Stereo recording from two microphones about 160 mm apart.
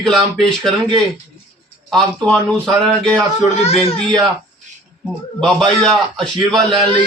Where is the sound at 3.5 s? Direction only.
40° left (ahead or behind).